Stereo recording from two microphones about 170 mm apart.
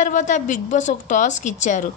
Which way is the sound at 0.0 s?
50° left (ahead or behind).